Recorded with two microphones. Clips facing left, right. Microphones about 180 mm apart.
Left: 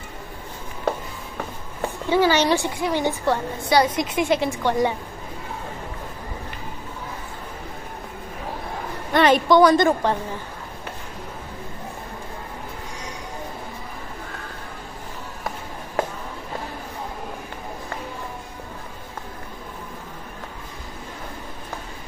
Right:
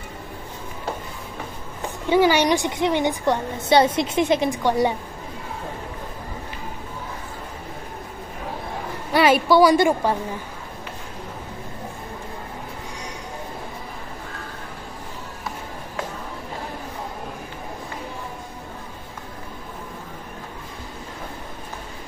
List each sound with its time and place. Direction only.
2.0 s a woman's voice: 15° right (ahead or behind)
9.1 s a woman's voice: 5° right (ahead or behind)